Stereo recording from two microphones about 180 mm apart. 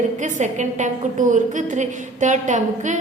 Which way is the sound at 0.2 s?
45° right (ahead or behind).